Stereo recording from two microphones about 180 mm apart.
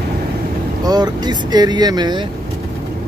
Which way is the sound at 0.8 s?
20° right (ahead or behind).